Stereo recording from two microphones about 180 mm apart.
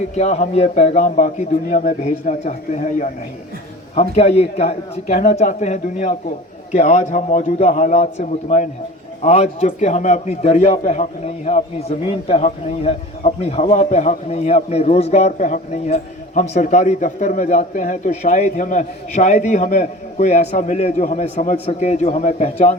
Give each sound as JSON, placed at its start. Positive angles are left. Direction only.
{"t": 0.2, "sound": "a man's voice", "side_deg": 40}